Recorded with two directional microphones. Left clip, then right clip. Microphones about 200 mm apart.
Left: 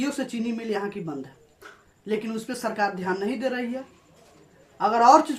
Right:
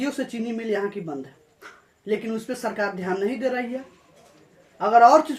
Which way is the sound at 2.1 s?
15° left (ahead or behind).